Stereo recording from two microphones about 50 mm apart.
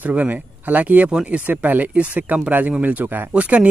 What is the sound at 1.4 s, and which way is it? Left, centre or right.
Speech, right.